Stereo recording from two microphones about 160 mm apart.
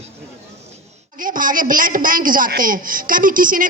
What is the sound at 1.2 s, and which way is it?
A man's voice, 60° right (ahead or behind).